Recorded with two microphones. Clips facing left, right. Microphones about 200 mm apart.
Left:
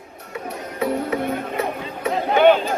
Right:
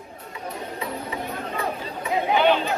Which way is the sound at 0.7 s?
70° left (ahead or behind).